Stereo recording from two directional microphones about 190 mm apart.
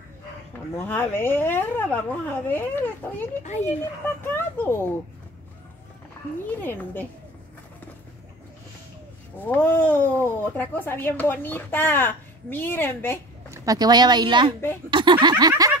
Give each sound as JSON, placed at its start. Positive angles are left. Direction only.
{"t": 0.7, "sound": "speech", "side_deg": 10}
{"t": 3.4, "sound": "a child's voice", "side_deg": 35}
{"t": 4.2, "sound": "a sound", "side_deg": 10}
{"t": 6.6, "sound": "speech", "side_deg": 10}
{"t": 9.4, "sound": "speech", "side_deg": 10}
{"t": 13.5, "sound": "speech", "side_deg": -20}
{"t": 14.9, "sound": "a sound", "side_deg": -25}